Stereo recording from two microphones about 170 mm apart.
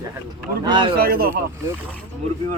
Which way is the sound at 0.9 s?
65° right (ahead or behind).